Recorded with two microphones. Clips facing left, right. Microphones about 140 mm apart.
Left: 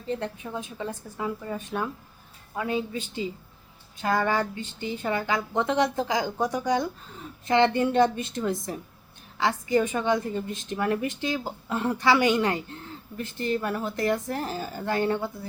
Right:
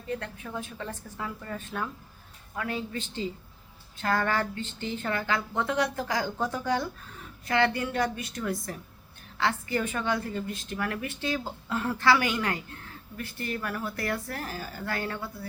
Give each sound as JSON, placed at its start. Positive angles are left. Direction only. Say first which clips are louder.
{"t": 0.1, "sound": "a woman's voice", "louder": "left 4 dB", "side_deg": 20}